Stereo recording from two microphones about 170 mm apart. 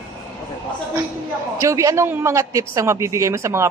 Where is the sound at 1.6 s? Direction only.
20° right (ahead or behind).